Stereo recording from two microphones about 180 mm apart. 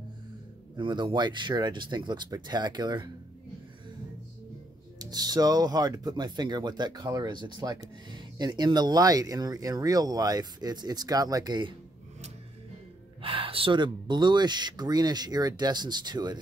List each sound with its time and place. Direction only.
0.7 s speech: 25° right (ahead or behind)
4.9 s speech: 20° right (ahead or behind)
13.2 s speech: 30° right (ahead or behind)